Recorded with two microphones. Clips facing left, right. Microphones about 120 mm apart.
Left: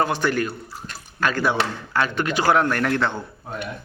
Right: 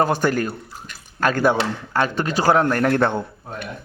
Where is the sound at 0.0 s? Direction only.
45° right (ahead or behind).